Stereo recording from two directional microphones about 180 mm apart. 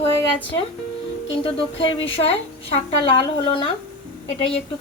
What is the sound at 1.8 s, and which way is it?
A woman's voice, 30° left (ahead or behind).